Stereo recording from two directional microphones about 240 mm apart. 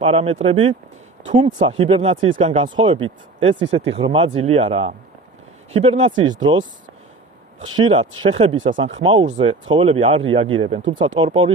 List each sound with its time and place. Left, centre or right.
0.0 s speech: right
7.9 s speech: right